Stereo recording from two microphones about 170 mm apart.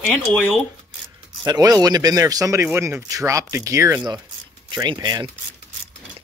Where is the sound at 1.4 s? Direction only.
20° right (ahead or behind).